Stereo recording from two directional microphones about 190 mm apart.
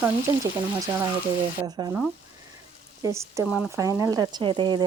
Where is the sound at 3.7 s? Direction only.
15° right (ahead or behind).